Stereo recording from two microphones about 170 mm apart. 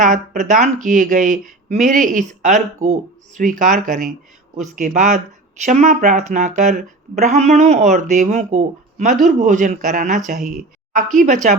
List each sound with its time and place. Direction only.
0.0 s speech: 45° right (ahead or behind)